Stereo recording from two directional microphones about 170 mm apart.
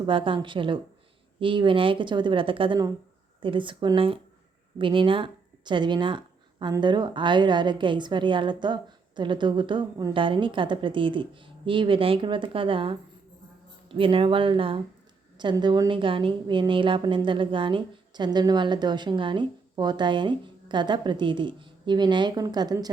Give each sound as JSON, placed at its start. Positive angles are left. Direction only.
{"t": 0.0, "sound": "a woman's voice", "side_deg": -30}